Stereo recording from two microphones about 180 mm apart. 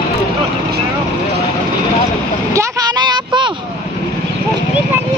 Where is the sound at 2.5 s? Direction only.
25° right (ahead or behind).